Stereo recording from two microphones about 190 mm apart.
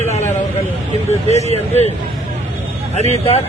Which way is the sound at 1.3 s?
35° left (ahead or behind).